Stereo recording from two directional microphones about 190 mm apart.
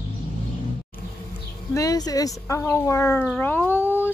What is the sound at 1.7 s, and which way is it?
Speech, 20° left (ahead or behind).